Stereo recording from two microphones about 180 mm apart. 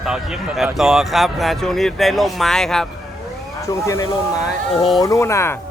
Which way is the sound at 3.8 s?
15° left (ahead or behind).